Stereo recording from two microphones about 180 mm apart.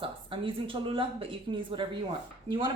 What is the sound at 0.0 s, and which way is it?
Speech, 30° right (ahead or behind).